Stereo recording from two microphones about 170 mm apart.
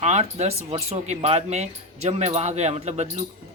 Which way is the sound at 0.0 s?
40° right (ahead or behind).